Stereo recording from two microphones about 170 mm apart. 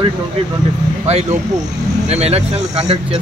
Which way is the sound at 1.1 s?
40° right (ahead or behind).